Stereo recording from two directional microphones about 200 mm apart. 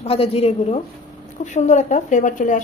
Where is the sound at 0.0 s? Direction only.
30° left (ahead or behind).